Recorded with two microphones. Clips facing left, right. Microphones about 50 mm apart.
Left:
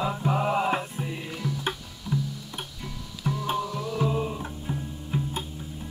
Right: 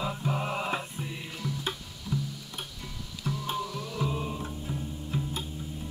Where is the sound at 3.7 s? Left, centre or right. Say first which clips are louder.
Left 5 dB; centre.